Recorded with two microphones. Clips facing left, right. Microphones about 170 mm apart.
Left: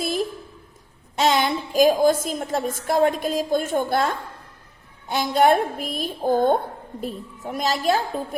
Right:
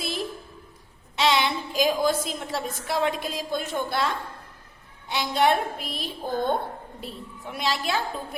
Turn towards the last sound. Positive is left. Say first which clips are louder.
# left 6 dB
turn(degrees=45)  # may be behind; listen again after turning